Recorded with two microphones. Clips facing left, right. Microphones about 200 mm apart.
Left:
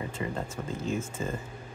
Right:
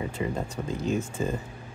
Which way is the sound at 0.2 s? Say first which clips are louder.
Right 3 dB; 15° right (ahead or behind).